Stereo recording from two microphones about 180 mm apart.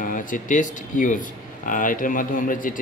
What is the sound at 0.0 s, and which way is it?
A man's voice, 50° left (ahead or behind).